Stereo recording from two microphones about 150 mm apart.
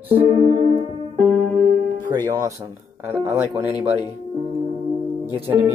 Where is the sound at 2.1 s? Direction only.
25° right (ahead or behind).